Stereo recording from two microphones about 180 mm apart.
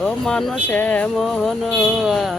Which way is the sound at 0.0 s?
5° left (ahead or behind).